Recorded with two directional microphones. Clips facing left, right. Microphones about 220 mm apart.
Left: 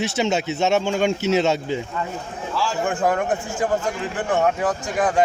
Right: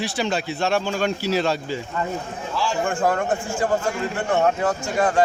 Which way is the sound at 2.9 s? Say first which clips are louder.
Left 1 dB; 5° left (ahead or behind).